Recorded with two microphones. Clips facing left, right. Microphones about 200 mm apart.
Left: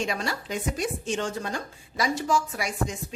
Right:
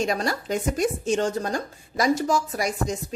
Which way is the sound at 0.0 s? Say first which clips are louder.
Right 5 dB; 40° right (ahead or behind).